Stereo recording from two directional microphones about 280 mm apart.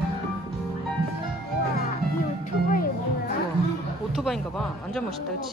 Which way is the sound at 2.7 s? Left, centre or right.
Left.